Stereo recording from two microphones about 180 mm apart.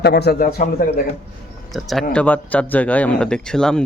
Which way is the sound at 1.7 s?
Centre (ahead or behind).